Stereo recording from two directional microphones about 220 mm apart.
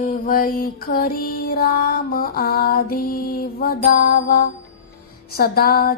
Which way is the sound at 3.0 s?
40° left (ahead or behind).